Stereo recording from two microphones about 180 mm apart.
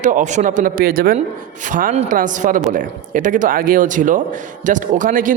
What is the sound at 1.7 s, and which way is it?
Speech, 40° right (ahead or behind).